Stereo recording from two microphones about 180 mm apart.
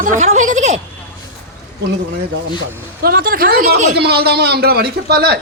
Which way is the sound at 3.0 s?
55° right (ahead or behind).